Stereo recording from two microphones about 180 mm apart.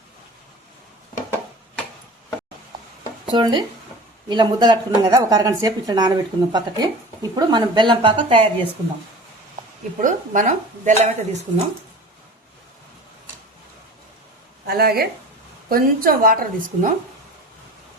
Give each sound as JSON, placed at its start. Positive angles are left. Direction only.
{"t": 3.2, "sound": "a woman's voice", "side_deg": -25}
{"t": 10.0, "sound": "speech", "side_deg": -45}
{"t": 14.7, "sound": "speech", "side_deg": -60}